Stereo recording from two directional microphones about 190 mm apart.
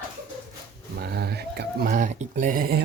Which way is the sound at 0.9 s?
60° right (ahead or behind).